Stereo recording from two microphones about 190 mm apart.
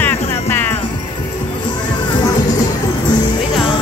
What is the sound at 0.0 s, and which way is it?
Music, 15° left (ahead or behind).